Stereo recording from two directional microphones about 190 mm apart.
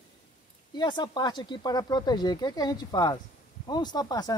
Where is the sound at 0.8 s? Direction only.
20° left (ahead or behind).